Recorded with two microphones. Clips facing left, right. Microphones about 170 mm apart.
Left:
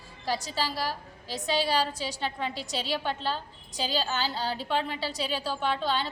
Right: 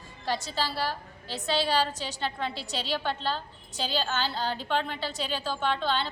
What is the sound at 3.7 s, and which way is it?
Speech, 40° left (ahead or behind).